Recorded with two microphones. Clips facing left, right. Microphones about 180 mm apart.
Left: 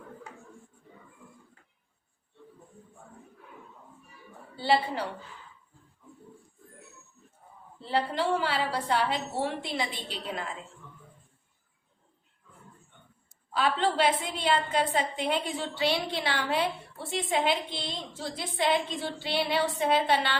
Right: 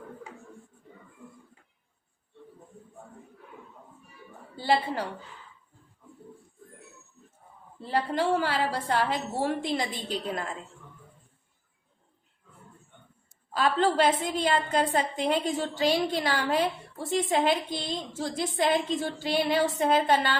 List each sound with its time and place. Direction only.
4.6 s a woman's voice: 45° right (ahead or behind)
7.9 s a woman's voice: 45° right (ahead or behind)
13.5 s a woman's voice: 45° right (ahead or behind)